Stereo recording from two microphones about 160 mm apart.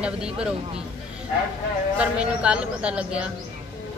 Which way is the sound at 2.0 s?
5° right (ahead or behind).